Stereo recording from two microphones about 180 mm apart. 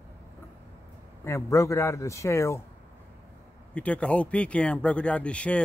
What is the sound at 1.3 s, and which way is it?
Speech, 15° left (ahead or behind).